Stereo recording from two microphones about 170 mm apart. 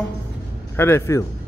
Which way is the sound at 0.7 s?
15° left (ahead or behind).